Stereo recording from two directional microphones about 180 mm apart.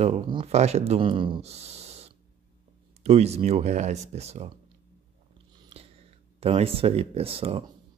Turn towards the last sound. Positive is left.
turn(degrees=-30)  # may be behind; listen again after turning